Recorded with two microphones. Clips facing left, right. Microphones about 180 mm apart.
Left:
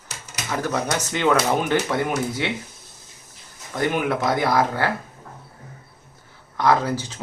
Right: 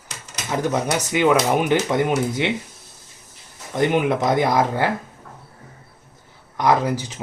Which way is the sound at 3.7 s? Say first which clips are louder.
Right 4 dB; 20° right (ahead or behind).